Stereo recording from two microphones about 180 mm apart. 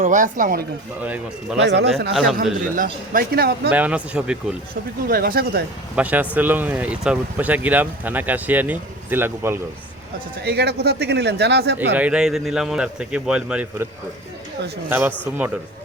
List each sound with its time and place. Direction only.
0.0 s speech: 45° right (ahead or behind)
1.0 s a man's voice: 10° right (ahead or behind)
2.6 s speech: 50° right (ahead or behind)
3.7 s speech: 10° right (ahead or behind)
4.7 s speech: 55° right (ahead or behind)
6.0 s speech: 10° right (ahead or behind)
10.4 s a man's voice: 65° right (ahead or behind)
11.9 s a man's voice: 5° right (ahead or behind)
14.8 s speech: 10° right (ahead or behind)